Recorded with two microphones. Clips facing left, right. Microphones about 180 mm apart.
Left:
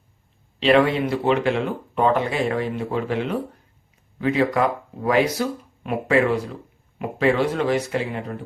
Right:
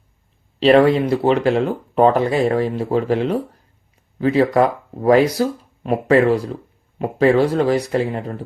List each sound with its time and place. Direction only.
0.6 s speech: 40° right (ahead or behind)